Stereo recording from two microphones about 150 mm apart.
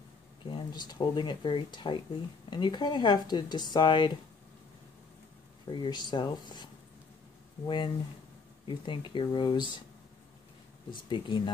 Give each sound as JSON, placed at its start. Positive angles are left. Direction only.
{"t": 0.4, "sound": "speech", "side_deg": 35}
{"t": 5.7, "sound": "speech", "side_deg": 30}
{"t": 10.9, "sound": "speech", "side_deg": 35}